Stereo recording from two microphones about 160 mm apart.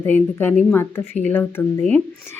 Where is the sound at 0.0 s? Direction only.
10° left (ahead or behind).